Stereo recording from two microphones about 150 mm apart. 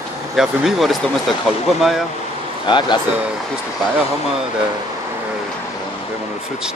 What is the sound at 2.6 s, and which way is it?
Speech, 30° left (ahead or behind).